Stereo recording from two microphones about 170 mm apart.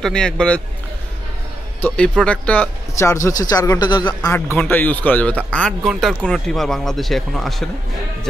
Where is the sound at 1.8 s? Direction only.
5° left (ahead or behind); by 4.3 s 25° left (ahead or behind).